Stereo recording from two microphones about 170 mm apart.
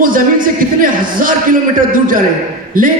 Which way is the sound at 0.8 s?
55° right (ahead or behind).